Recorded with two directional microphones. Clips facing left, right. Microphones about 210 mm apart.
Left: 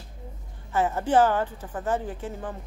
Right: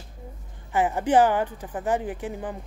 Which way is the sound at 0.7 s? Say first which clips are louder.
Right 2 dB; 15° right (ahead or behind).